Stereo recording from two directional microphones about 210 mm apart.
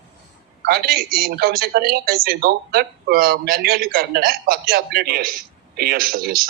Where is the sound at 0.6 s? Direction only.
45° right (ahead or behind).